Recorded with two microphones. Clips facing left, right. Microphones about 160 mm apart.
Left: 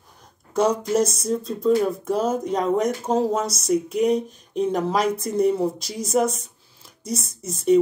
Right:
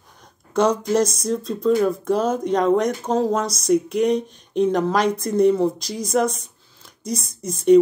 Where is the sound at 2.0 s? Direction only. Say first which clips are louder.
Right 2 dB; 5° left (ahead or behind).